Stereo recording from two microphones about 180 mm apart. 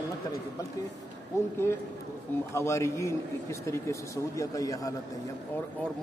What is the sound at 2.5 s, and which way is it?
A man's voice, 15° left (ahead or behind).